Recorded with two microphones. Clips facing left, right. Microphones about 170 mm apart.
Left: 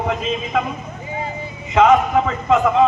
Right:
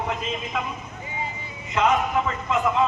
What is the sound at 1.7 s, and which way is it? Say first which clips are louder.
A man's voice: left 8 dB; 90° left.